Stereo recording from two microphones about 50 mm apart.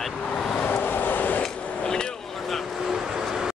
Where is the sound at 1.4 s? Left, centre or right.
Centre.